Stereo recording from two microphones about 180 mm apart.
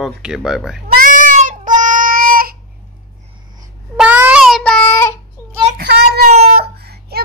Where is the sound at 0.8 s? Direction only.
50° right (ahead or behind).